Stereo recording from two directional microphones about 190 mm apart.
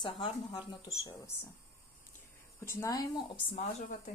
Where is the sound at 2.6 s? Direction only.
15° left (ahead or behind); by 4.1 s 35° left (ahead or behind).